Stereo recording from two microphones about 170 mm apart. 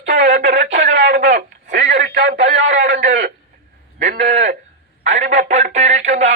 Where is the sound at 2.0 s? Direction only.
90° right.